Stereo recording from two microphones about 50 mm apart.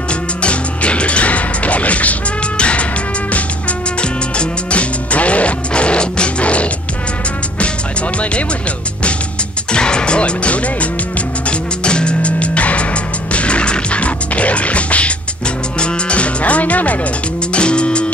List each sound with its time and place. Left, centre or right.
0.4 s music: left
4.0 s music: left
9.7 s music: centre
17.6 s music: centre